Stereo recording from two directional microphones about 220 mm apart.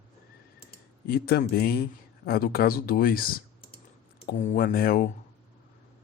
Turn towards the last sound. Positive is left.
turn(degrees=40)  # may be behind; listen again after turning